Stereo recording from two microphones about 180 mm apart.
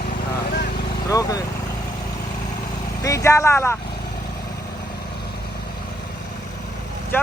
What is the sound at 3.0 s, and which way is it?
Speech, 15° left (ahead or behind).